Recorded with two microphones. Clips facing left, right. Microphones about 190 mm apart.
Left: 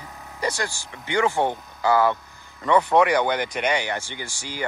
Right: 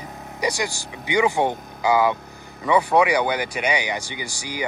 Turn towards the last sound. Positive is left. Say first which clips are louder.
# right 1 dB
turn(degrees=-10)  # may be behind; listen again after turning